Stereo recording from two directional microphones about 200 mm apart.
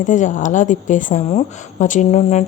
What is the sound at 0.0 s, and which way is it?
A woman's voice, 40° left (ahead or behind).